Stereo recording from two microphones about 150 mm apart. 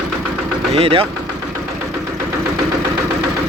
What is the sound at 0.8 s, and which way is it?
Speech, 40° right (ahead or behind).